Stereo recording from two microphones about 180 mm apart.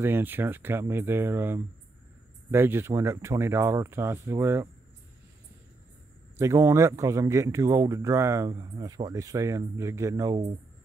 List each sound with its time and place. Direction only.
0.0 s speech: 10° right (ahead or behind)
6.3 s speech: 15° right (ahead or behind)